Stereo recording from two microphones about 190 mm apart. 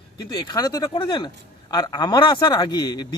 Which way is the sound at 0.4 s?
20° left (ahead or behind).